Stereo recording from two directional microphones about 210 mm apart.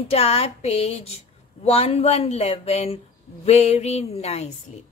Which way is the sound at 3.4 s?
30° left (ahead or behind).